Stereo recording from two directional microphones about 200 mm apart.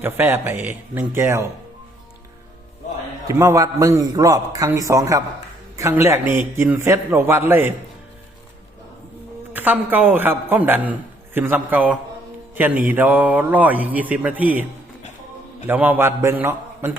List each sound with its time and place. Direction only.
0.0 s speech: 10° right (ahead or behind)
3.2 s speech: 15° right (ahead or behind)
9.5 s speech: 10° right (ahead or behind)
15.6 s speech: 10° right (ahead or behind)